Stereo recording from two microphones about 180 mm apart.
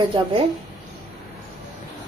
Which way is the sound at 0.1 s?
30° right (ahead or behind).